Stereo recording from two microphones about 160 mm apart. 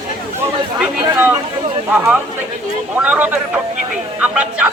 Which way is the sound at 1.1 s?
10° right (ahead or behind).